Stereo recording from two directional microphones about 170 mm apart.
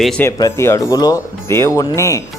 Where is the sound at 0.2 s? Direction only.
20° left (ahead or behind).